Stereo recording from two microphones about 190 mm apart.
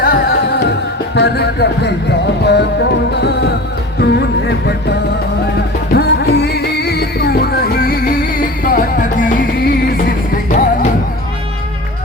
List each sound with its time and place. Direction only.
0.0 s music: 50° left (ahead or behind)